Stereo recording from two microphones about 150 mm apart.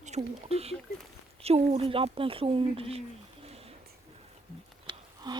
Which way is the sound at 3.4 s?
45° right (ahead or behind).